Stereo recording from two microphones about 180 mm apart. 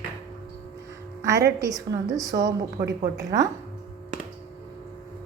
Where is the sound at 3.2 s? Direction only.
20° right (ahead or behind).